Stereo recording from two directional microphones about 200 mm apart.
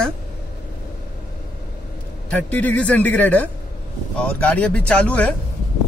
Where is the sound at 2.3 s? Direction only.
5° left (ahead or behind).